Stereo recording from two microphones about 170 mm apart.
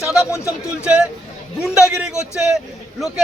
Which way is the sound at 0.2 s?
15° left (ahead or behind).